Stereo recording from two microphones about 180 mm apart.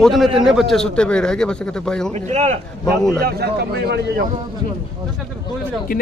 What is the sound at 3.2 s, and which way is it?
Speech, 60° right (ahead or behind).